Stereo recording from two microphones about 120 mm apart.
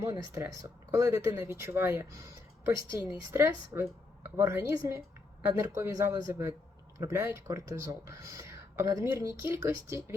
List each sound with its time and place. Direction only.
0.0 s speech: 25° right (ahead or behind)
2.1 s a sound: 25° right (ahead or behind)
2.9 s speech: 20° right (ahead or behind)